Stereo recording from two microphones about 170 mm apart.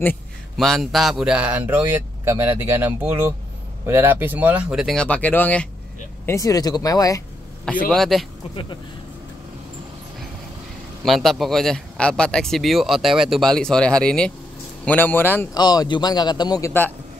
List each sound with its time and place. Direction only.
0.0 s a man's voice: 5° left (ahead or behind)
7.9 s a man's voice: centre (ahead or behind)
11.1 s a man's voice: centre (ahead or behind)
15.5 s speech: 25° left (ahead or behind)